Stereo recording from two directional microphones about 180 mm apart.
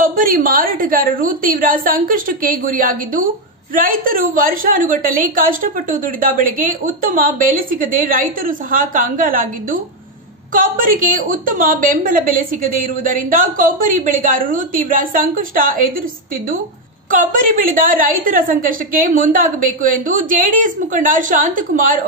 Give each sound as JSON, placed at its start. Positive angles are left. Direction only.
{"t": 0.0, "sound": "a woman's voice", "side_deg": -50}
{"t": 17.1, "sound": "a woman's voice", "side_deg": -50}